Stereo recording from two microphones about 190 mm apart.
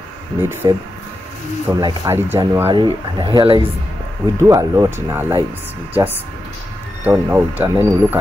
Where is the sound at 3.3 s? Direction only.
25° right (ahead or behind).